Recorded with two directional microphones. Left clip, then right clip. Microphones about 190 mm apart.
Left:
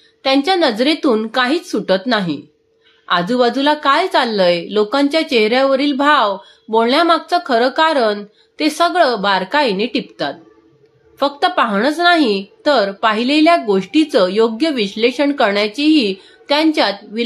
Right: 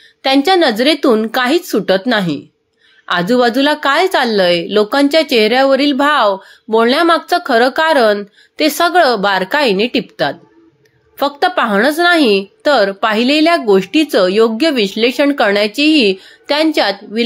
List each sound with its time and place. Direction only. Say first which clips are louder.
0.2 s a woman's voice: right 3 dB; 20° right (ahead or behind)